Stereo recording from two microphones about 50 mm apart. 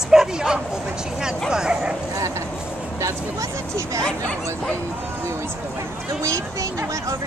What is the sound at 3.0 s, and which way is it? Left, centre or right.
Speech, right.